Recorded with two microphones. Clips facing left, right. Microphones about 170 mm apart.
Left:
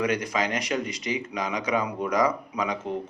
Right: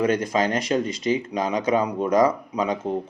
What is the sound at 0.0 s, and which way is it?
Speech, 30° right (ahead or behind).